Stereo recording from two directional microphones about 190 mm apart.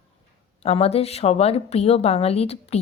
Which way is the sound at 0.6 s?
30° left (ahead or behind).